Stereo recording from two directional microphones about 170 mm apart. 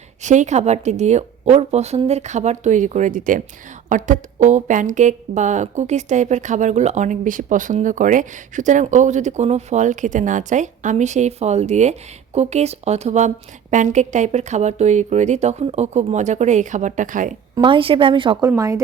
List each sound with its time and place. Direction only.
0.2 s a woman's voice: 45° right (ahead or behind)
17.5 s a woman's voice: 30° right (ahead or behind)